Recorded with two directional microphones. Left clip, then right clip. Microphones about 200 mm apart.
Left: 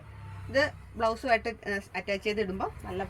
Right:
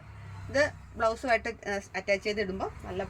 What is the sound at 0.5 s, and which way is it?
A woman's voice, 25° right (ahead or behind).